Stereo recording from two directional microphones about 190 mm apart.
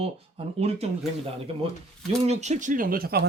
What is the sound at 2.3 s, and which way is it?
Speech, 35° right (ahead or behind).